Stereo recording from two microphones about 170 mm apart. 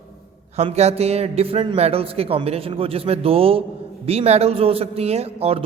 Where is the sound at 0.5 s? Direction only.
40° right (ahead or behind).